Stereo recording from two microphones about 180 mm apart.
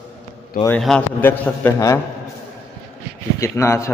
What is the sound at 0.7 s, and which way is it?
A man's voice, 5° left (ahead or behind).